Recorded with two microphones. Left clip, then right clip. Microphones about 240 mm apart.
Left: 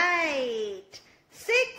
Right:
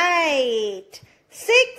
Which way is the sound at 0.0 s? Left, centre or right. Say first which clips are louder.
Right 7 dB; right.